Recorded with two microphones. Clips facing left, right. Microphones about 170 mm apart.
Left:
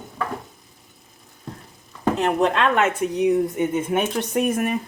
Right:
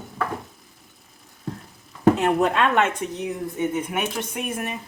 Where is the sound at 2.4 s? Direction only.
Centre (ahead or behind); by 3.8 s 15° left (ahead or behind).